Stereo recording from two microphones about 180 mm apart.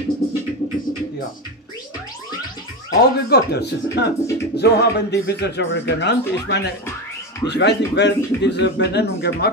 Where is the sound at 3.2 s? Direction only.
65° left (ahead or behind).